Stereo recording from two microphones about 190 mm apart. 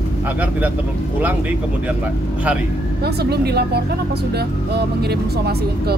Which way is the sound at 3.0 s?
60° right (ahead or behind).